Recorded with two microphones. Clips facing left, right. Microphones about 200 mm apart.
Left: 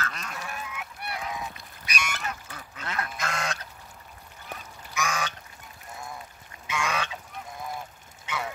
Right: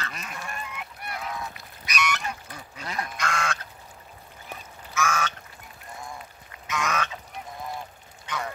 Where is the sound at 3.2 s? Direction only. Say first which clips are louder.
Right 4 dB; 20° left (ahead or behind).